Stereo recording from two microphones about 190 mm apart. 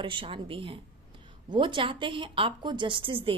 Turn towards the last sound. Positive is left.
turn(degrees=-25)  # may be behind; listen again after turning